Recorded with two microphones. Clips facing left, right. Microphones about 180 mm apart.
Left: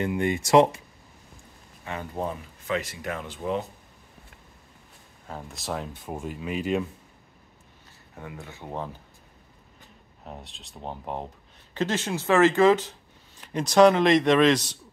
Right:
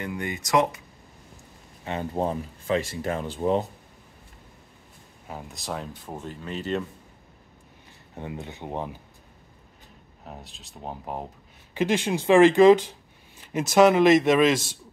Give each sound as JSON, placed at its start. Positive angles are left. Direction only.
{"t": 0.0, "sound": "speech", "side_deg": 25}
{"t": 1.9, "sound": "speech", "side_deg": -30}
{"t": 5.3, "sound": "speech", "side_deg": 0}
{"t": 8.1, "sound": "speech", "side_deg": -25}
{"t": 10.2, "sound": "speech", "side_deg": 0}